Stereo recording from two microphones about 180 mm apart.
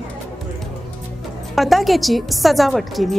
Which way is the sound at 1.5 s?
Centre (ahead or behind).